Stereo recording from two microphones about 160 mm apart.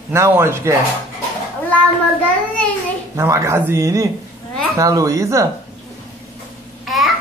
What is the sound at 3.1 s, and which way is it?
Speech, 20° right (ahead or behind).